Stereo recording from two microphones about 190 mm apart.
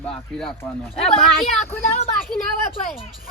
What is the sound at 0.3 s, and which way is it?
Speech, centre (ahead or behind).